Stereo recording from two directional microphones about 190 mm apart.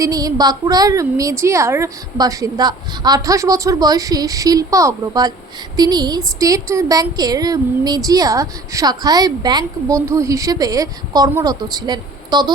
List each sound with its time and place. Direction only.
0.0 s a woman's voice: 20° right (ahead or behind)